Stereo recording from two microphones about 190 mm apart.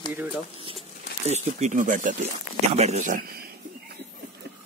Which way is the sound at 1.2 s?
35° right (ahead or behind).